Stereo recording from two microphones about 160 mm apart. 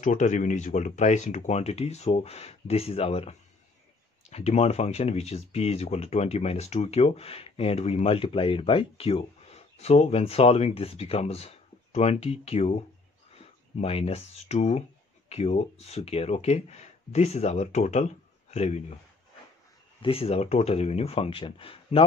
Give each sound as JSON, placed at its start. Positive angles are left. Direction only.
{"t": 0.0, "sound": "speech", "side_deg": 50}
{"t": 20.0, "sound": "speech", "side_deg": 35}